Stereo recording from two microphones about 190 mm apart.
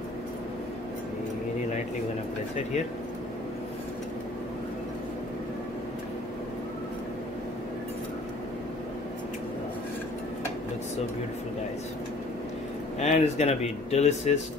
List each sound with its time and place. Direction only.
13.0 s speech: 35° left (ahead or behind)